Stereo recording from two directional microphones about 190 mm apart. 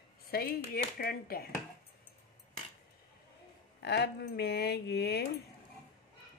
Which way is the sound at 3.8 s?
60° left (ahead or behind).